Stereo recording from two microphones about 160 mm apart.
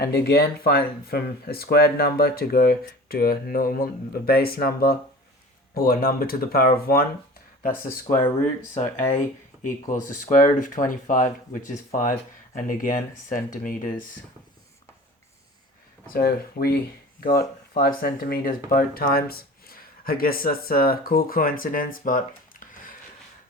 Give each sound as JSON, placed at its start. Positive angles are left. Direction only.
{"t": 0.0, "sound": "speech", "side_deg": 85}
{"t": 9.0, "sound": "speech", "side_deg": 20}
{"t": 9.6, "sound": "speech", "side_deg": 55}
{"t": 16.1, "sound": "speech", "side_deg": 70}